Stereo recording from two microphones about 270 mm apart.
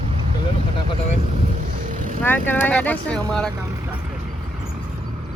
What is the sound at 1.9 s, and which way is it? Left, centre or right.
Vehicle, right.